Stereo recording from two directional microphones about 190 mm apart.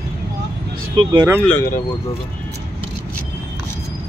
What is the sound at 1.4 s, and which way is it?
Speech, 5° left (ahead or behind).